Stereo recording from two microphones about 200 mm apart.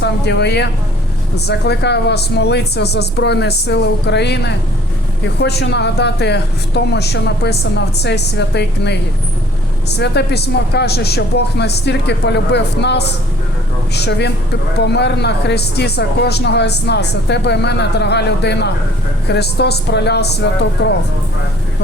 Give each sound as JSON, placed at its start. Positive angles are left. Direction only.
{"t": 0.0, "sound": "speech", "side_deg": 55}
{"t": 10.0, "sound": "speech", "side_deg": 55}